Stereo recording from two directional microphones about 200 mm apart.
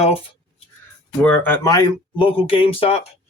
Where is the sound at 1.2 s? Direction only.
10° left (ahead or behind); by 2.9 s 25° left (ahead or behind).